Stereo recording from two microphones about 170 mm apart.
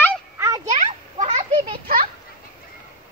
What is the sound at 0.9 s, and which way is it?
Children playing, 45° right (ahead or behind).